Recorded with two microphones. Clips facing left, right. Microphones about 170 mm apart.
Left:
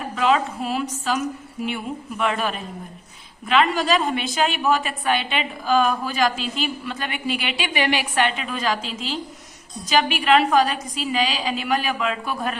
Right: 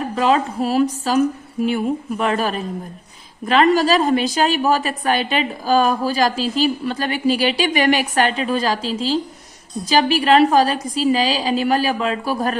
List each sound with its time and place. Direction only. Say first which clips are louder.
0.2 s a woman's voice: right 3 dB; 40° right (ahead or behind)